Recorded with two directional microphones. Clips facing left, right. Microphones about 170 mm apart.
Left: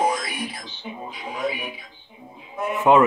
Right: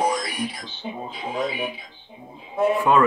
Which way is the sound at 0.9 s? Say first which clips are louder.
Right 3 dB; 30° right (ahead or behind).